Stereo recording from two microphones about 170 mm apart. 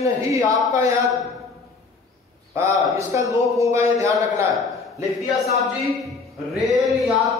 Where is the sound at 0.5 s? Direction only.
20° right (ahead or behind).